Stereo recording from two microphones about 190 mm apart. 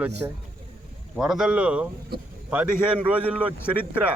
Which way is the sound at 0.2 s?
10° right (ahead or behind).